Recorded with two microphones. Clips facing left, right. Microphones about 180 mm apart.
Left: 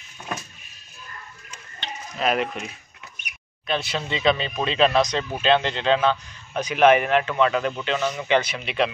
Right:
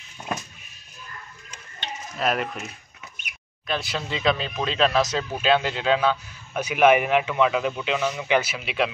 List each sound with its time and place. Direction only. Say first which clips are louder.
2.1 s a man's voice: left 2 dB; centre (ahead or behind)